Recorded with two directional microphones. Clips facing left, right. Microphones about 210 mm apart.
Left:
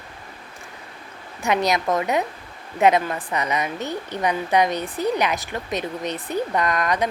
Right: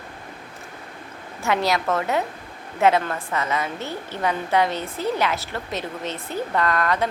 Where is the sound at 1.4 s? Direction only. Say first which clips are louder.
Left 1 dB; 20° left (ahead or behind).